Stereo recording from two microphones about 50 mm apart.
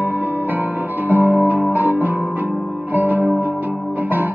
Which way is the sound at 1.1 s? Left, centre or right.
Right.